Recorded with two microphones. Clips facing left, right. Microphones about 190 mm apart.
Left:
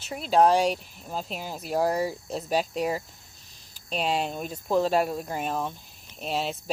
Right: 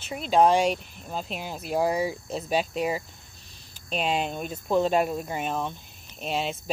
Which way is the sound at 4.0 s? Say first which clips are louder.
Even; centre (ahead or behind).